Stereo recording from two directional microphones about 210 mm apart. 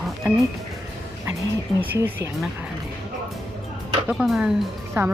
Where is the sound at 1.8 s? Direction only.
10° right (ahead or behind).